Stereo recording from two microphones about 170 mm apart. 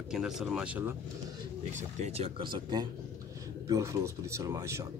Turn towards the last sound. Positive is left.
turn(degrees=-20)  # may be behind; listen again after turning